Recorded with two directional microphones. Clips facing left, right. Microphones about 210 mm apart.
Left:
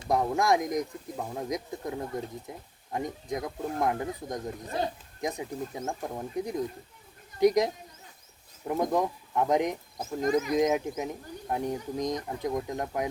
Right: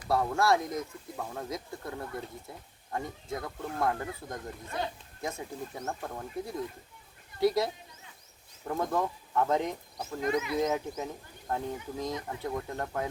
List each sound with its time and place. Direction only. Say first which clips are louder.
0.0 s speech: left 1 dB; 15° left (ahead or behind)
4.6 s speech: left 3 dB; 35° left (ahead or behind)
5.2 s speech: left 4 dB; 15° left (ahead or behind)
10.2 s speech: left 4 dB; 45° left (ahead or behind)
10.5 s speech: left 4 dB; 15° left (ahead or behind)